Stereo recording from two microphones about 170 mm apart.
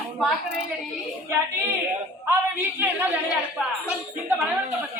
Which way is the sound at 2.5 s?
15° right (ahead or behind).